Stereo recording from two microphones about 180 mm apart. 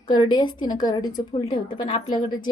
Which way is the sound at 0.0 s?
25° left (ahead or behind).